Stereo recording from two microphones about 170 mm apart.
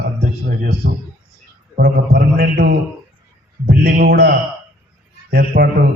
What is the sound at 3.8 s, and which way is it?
Speech, 75° right (ahead or behind).